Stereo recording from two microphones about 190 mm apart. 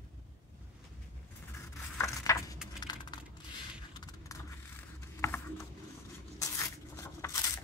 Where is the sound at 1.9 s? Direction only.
15° left (ahead or behind).